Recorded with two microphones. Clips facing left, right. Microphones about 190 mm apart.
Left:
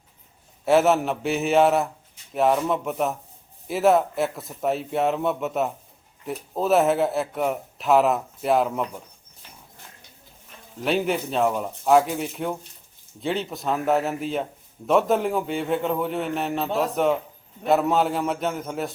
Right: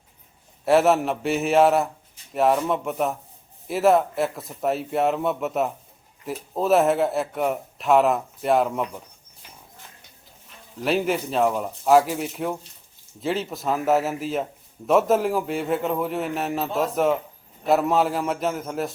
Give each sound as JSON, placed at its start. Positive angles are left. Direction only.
{"t": 0.6, "sound": "a man's voice", "side_deg": 0}
{"t": 10.8, "sound": "a man's voice", "side_deg": 0}